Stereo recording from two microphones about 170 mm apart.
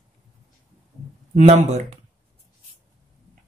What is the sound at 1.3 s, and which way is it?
Speech, 40° right (ahead or behind).